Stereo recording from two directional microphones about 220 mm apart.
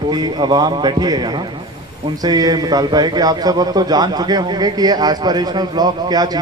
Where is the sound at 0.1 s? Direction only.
20° right (ahead or behind).